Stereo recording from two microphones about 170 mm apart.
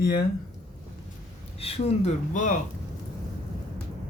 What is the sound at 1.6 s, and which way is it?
Speech, 35° left (ahead or behind).